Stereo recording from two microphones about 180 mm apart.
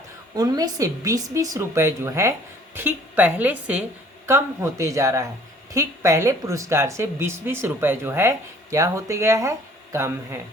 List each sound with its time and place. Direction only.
0.3 s speech: 20° right (ahead or behind)